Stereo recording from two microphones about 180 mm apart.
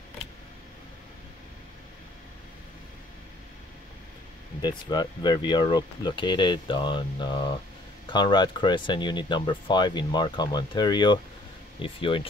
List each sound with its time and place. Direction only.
4.6 s speech: 25° left (ahead or behind)